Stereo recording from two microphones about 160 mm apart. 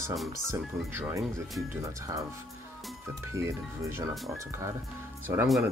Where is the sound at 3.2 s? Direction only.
20° right (ahead or behind).